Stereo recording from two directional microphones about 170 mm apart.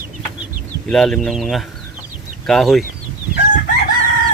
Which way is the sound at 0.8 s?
5° left (ahead or behind).